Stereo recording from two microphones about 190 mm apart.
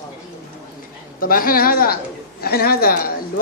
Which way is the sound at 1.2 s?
50° left (ahead or behind).